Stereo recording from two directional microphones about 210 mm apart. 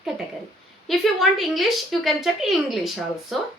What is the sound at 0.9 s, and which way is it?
A woman's voice, centre (ahead or behind).